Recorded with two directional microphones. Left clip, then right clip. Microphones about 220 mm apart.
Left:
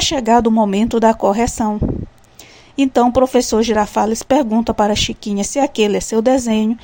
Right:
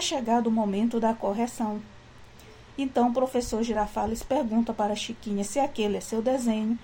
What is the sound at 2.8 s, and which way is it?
Speech, 45° left (ahead or behind).